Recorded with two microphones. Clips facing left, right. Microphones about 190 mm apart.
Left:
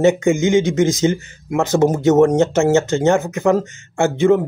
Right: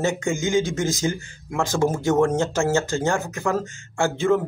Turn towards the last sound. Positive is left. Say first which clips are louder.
# left 6 dB
turn(degrees=20)  # may be behind; listen again after turning